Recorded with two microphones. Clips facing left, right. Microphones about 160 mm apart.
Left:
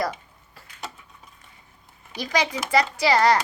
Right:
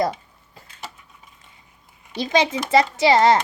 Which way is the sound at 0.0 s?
25° right (ahead or behind).